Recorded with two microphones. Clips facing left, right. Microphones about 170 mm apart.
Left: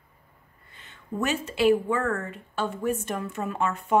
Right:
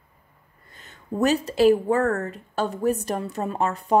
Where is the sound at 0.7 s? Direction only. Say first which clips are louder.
Right 3 dB; 40° right (ahead or behind).